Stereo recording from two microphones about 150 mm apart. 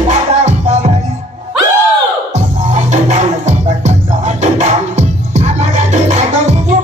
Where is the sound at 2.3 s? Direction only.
50° right (ahead or behind).